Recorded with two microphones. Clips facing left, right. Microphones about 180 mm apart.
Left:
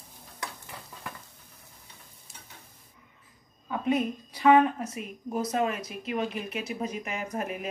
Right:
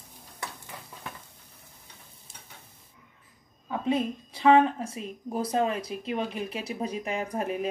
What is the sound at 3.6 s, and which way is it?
A woman's voice, 25° right (ahead or behind).